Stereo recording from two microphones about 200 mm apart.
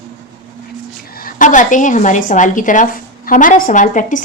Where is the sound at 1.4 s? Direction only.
40° left (ahead or behind).